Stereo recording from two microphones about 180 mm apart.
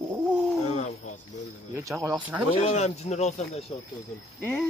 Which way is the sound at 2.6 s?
40° left (ahead or behind).